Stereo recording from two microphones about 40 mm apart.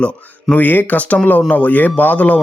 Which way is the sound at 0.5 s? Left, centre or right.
Left.